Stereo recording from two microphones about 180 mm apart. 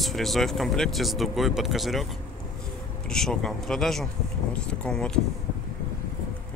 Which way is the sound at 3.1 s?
5° left (ahead or behind).